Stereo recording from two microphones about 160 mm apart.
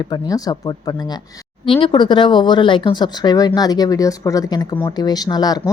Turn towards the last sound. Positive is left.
turn(degrees=25)  # may be behind; listen again after turning